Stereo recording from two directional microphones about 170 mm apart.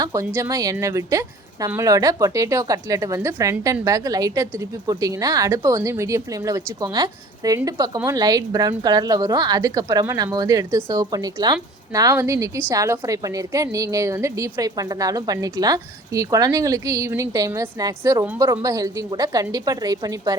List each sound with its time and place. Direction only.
0.0 s a woman's voice: 20° right (ahead or behind)